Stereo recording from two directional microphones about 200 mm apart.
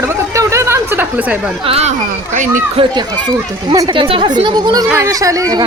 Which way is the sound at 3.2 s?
20° right (ahead or behind).